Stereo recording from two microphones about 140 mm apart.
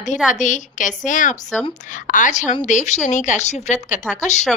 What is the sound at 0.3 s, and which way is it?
A woman's voice, 65° left (ahead or behind).